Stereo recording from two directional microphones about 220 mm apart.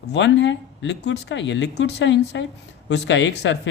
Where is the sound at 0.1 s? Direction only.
55° left (ahead or behind).